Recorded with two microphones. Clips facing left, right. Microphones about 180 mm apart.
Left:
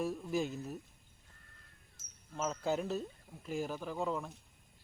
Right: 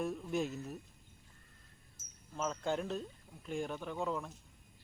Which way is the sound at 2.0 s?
70° left (ahead or behind).